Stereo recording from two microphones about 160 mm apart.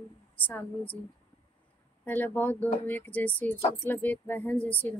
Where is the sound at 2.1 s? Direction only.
10° left (ahead or behind).